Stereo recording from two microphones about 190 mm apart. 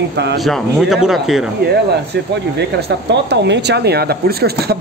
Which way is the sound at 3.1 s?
65° right (ahead or behind).